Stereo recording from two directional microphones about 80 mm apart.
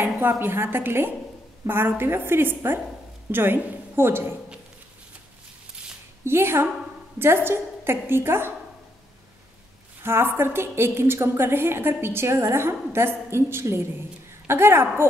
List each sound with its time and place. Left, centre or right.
0.2 s a woman's voice: right
6.2 s a woman's voice: right
10.0 s a woman's voice: right